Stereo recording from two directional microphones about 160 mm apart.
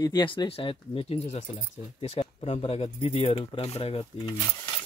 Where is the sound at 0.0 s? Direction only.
30° left (ahead or behind).